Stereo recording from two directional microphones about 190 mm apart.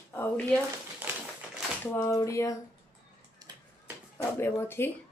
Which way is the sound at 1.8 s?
15° left (ahead or behind).